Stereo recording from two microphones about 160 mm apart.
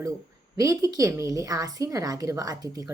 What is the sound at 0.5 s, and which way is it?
Speech, 20° right (ahead or behind).